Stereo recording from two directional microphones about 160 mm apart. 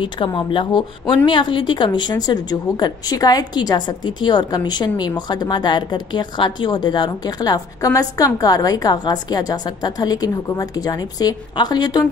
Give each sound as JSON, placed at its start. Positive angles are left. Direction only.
{"t": 0.0, "sound": "a woman's voice", "side_deg": 30}